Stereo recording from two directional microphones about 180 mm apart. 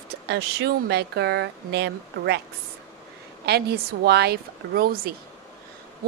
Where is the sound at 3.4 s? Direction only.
65° right (ahead or behind).